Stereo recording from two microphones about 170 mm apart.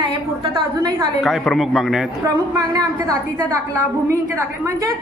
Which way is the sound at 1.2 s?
Centre (ahead or behind).